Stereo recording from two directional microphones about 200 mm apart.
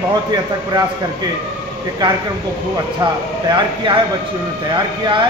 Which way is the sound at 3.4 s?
20° right (ahead or behind).